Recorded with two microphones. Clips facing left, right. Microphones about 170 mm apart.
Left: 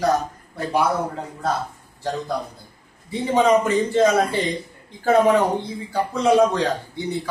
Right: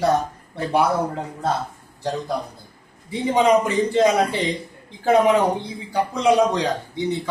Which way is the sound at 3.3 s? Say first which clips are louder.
Even; 15° right (ahead or behind).